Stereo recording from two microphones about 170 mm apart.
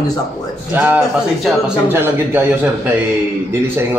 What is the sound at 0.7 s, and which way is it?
A man's voice, 10° right (ahead or behind).